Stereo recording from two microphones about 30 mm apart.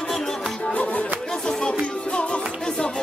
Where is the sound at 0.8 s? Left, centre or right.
Left.